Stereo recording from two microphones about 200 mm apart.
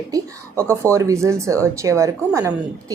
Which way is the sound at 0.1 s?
15° right (ahead or behind).